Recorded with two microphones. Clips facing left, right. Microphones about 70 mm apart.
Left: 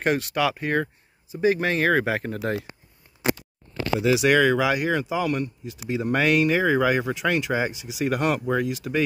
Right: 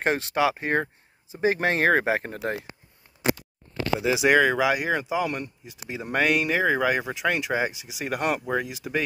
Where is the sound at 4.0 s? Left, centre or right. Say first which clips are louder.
Left 1 dB; centre.